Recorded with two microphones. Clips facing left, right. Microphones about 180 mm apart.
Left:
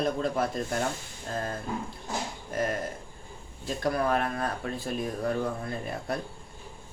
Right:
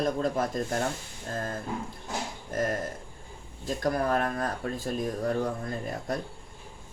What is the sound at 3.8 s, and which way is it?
Speech, 45° right (ahead or behind).